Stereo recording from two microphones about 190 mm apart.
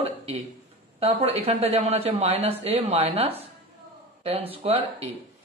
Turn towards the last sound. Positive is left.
turn(degrees=-30)  # may be behind; listen again after turning